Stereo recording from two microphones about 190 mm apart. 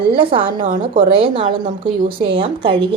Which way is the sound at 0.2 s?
25° right (ahead or behind).